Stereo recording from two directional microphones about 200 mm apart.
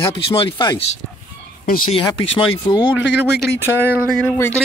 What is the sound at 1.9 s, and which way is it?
Speech, 30° left (ahead or behind).